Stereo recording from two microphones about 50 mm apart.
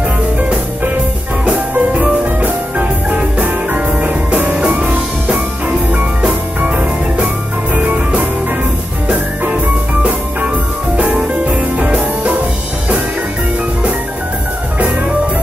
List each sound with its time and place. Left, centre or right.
1.4 s music: right
7.7 s music: right
11.1 s music: right